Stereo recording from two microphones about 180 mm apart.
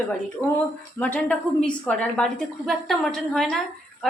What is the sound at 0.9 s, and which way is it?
A woman's voice, 10° left (ahead or behind).